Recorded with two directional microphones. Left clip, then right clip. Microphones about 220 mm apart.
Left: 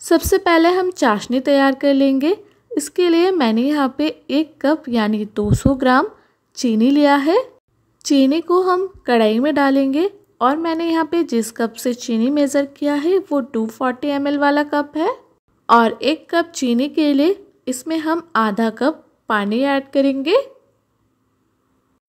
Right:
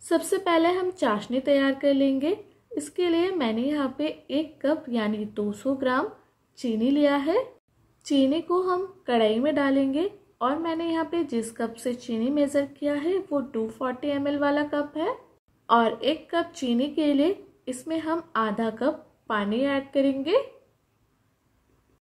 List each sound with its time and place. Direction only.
0.0 s a woman's voice: 50° left (ahead or behind)